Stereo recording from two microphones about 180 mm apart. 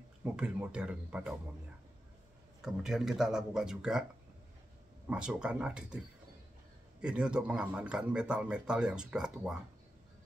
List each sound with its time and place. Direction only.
0.2 s speech: 5° right (ahead or behind)
2.6 s speech: centre (ahead or behind)
5.1 s speech: 5° right (ahead or behind)
7.0 s speech: 5° right (ahead or behind)